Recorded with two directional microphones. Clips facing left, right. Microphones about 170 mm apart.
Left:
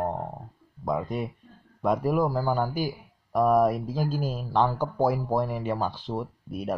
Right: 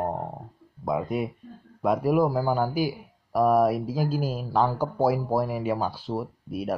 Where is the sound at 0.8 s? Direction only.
10° right (ahead or behind).